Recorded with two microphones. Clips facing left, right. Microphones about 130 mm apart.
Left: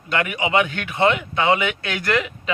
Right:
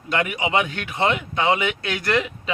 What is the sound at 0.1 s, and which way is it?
A man's voice, 30° right (ahead or behind).